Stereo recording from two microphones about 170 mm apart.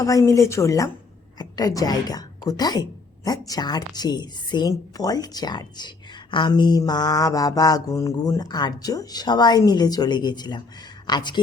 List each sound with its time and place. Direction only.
0.0 s mantra: 20° left (ahead or behind)
1.4 s a woman's voice: 20° left (ahead or behind)
3.2 s mantra: 20° left (ahead or behind)
11.0 s speech: 25° left (ahead or behind)